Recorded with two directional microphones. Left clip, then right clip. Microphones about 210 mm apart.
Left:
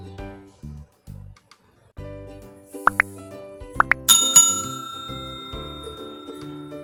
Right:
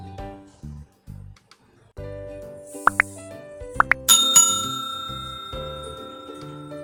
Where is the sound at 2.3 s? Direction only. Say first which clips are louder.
Right 4 dB; 5° left (ahead or behind).